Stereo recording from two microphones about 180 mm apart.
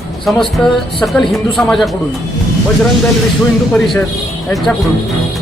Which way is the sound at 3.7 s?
Centre (ahead or behind).